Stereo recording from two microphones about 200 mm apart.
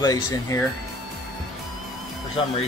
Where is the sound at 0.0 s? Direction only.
20° left (ahead or behind).